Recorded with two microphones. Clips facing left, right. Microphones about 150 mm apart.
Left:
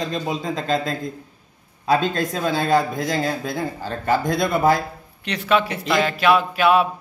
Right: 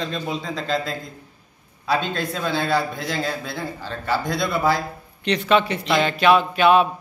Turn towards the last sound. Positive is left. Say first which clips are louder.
# right 1 dB
turn(degrees=5)  # may be behind; listen again after turning